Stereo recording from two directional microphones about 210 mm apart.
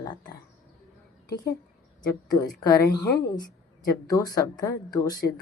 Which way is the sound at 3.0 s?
50° left (ahead or behind).